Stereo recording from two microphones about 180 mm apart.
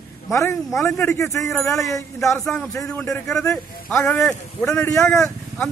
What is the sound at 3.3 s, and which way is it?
Speech, 5° left (ahead or behind).